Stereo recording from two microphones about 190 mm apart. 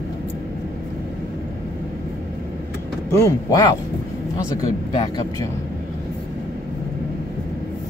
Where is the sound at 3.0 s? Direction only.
15° left (ahead or behind).